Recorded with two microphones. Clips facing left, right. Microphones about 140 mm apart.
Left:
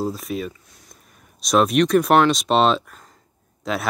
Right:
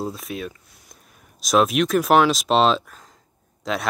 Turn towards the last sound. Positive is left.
turn(degrees=0)  # may be behind; listen again after turning